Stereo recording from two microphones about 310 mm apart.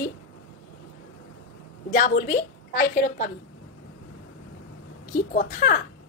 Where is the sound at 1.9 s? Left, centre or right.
Left.